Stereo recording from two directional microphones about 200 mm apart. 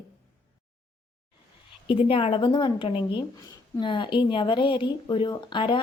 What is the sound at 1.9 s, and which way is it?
Speech, 25° left (ahead or behind).